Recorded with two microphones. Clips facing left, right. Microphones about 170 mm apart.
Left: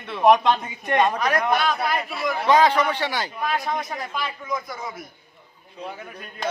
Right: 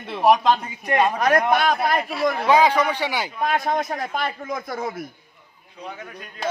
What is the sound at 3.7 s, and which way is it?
Speech, 50° right (ahead or behind).